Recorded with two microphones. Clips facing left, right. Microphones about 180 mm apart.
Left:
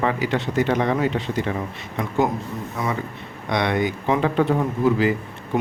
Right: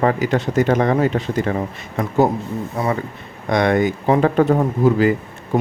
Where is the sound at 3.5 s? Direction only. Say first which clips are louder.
Right 5 dB; 45° right (ahead or behind).